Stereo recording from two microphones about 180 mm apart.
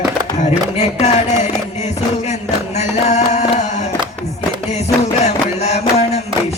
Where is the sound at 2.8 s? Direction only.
40° left (ahead or behind).